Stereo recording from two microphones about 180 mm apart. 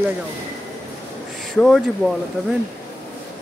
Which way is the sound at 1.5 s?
5° left (ahead or behind).